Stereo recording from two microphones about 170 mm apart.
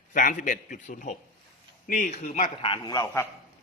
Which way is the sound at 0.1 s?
50° left (ahead or behind).